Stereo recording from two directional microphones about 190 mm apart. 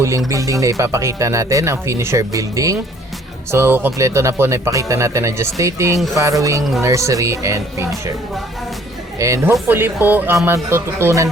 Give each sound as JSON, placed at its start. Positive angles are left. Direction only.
{"t": 0.3, "sound": "speech", "side_deg": -15}
{"t": 9.1, "sound": "speech", "side_deg": -15}